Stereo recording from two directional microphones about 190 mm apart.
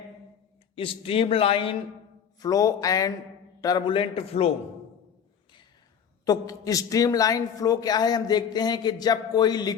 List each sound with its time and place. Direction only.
0.8 s a man's voice: 30° left (ahead or behind)
2.4 s a man's voice: 20° left (ahead or behind)
6.2 s a man's voice: 20° left (ahead or behind)